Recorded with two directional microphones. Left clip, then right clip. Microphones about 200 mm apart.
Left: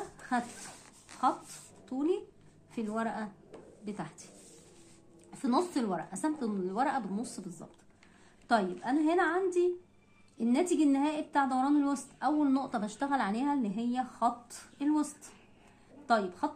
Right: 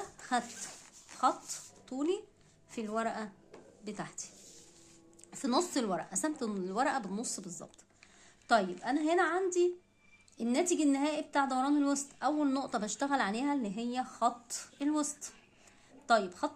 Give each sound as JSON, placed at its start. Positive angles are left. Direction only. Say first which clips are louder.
{"t": 1.9, "sound": "a woman's voice", "louder": "left 2 dB", "side_deg": -45}
{"t": 5.3, "sound": "a woman's voice", "louder": "left 1 dB", "side_deg": -45}